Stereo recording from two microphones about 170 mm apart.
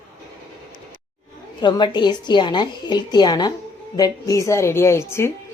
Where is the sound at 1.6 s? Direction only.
25° left (ahead or behind).